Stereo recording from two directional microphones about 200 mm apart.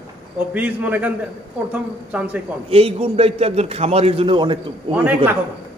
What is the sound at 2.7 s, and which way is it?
A man's voice, 30° right (ahead or behind).